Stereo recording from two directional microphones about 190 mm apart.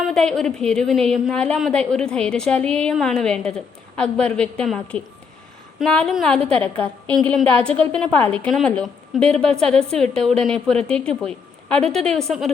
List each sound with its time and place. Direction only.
0.1 s a woman's voice: 5° left (ahead or behind)